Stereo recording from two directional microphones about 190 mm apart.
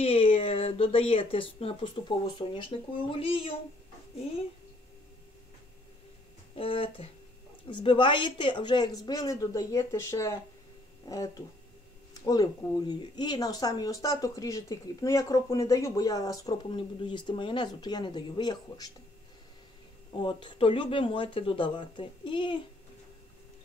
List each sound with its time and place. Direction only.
0.0 s speech: 30° left (ahead or behind)
6.5 s speech: 30° left (ahead or behind)
20.2 s speech: 25° left (ahead or behind)